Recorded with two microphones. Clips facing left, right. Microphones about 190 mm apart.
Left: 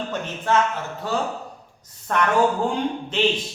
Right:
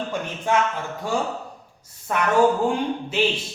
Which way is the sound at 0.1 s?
10° right (ahead or behind).